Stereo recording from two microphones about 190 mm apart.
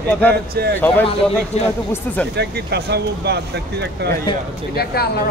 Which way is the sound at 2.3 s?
60° right (ahead or behind).